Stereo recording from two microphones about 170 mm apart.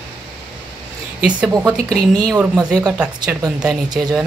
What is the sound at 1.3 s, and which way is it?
Speech, 5° right (ahead or behind).